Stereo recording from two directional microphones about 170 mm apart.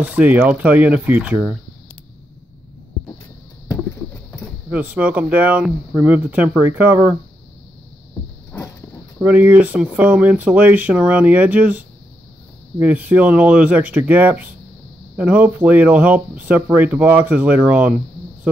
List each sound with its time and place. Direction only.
0.0 s speech: 10° right (ahead or behind)
4.6 s speech: 10° right (ahead or behind)
8.5 s a sound: 15° left (ahead or behind)
9.2 s speech: 10° right (ahead or behind)